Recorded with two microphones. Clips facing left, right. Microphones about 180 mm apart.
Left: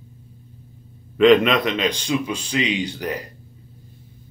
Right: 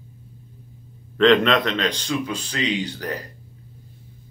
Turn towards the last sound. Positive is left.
turn(degrees=15)  # may be behind; listen again after turning